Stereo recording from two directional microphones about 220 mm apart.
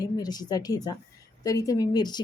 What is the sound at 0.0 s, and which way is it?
A woman's voice, 15° left (ahead or behind).